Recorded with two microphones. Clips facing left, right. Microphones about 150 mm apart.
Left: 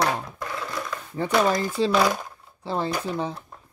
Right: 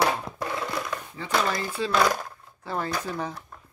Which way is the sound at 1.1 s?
50° left (ahead or behind).